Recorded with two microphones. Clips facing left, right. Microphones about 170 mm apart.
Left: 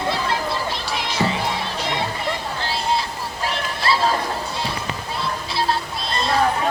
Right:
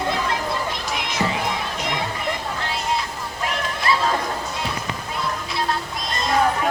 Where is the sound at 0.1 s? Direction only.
30° left (ahead or behind).